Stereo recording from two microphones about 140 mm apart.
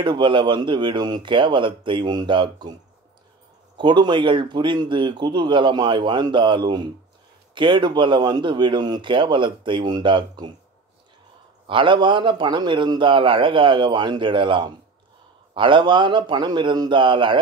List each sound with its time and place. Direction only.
0.0 s speech: 35° right (ahead or behind)
3.7 s speech: 35° right (ahead or behind)
11.6 s speech: 35° right (ahead or behind)